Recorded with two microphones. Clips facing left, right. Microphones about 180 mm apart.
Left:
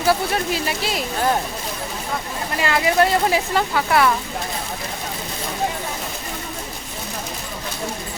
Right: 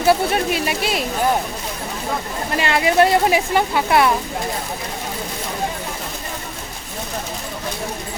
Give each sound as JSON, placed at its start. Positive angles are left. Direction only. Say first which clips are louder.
{"t": 0.1, "sound": "speech", "louder": "right 3 dB", "side_deg": -20}
{"t": 2.6, "sound": "speech", "louder": "right 2 dB", "side_deg": -25}